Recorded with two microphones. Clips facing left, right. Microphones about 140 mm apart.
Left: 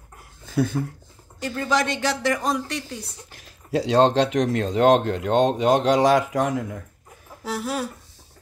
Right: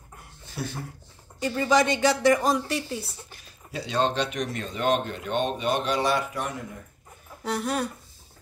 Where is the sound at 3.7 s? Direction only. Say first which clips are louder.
Left 8 dB; 90° left.